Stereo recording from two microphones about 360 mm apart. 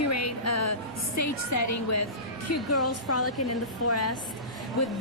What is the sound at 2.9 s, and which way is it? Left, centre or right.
Speech, left.